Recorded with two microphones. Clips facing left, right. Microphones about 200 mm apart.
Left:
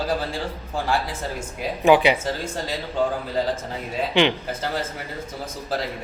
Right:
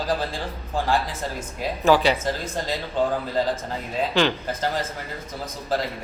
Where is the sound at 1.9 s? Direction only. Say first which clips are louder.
Left 2 dB; 15° left (ahead or behind).